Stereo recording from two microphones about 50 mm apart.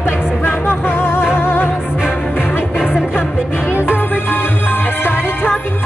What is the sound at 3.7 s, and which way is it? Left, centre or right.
Music, left.